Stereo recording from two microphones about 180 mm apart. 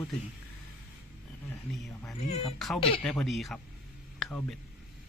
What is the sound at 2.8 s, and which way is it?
Speech, 30° left (ahead or behind).